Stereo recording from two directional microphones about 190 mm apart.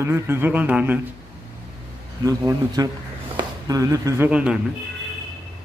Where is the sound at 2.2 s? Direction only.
20° right (ahead or behind).